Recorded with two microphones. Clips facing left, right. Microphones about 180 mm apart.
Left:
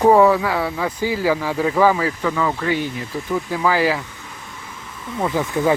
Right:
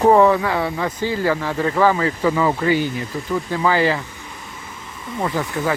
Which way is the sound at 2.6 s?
Centre (ahead or behind).